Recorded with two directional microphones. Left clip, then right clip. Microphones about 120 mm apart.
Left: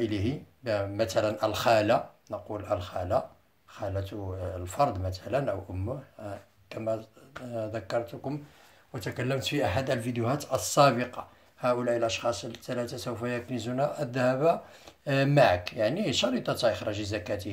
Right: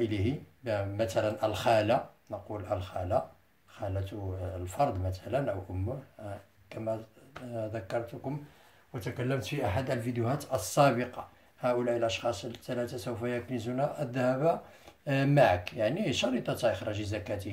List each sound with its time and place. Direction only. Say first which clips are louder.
0.0 s speech: left 1 dB; 45° left (ahead or behind)
8.9 s speech: left 2 dB; 90° left; by 17.5 s 45° left (ahead or behind)